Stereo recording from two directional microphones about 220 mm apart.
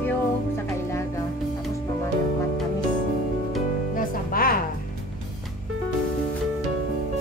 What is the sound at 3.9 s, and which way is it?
Music, 40° left (ahead or behind).